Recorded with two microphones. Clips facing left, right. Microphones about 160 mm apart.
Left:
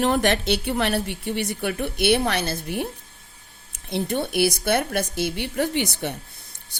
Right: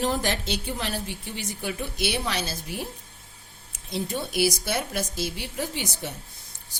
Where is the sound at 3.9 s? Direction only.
60° left (ahead or behind).